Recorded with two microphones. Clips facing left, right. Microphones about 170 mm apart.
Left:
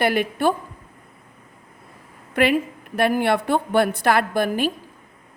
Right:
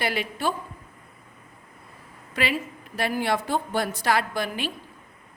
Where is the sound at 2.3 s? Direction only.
55° left (ahead or behind).